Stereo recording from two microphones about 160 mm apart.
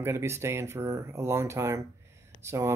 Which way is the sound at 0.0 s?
15° right (ahead or behind).